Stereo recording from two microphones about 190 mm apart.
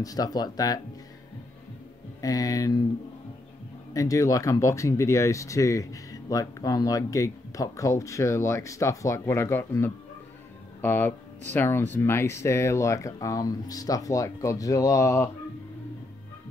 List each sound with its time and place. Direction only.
0.0 s speech: 20° left (ahead or behind)
2.2 s speech: 20° left (ahead or behind)
3.9 s speech: 15° left (ahead or behind)